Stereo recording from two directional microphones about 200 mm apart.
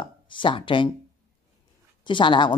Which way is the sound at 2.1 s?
25° left (ahead or behind).